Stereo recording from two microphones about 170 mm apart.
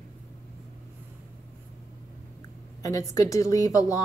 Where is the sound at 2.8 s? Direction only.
20° left (ahead or behind).